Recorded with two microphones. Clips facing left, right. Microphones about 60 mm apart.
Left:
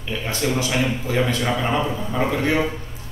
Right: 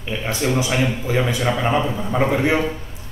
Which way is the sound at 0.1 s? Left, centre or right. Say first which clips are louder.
Right 2 dB; centre.